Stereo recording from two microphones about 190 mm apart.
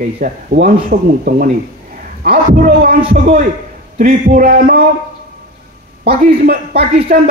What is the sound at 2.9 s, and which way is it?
Speech, 30° right (ahead or behind).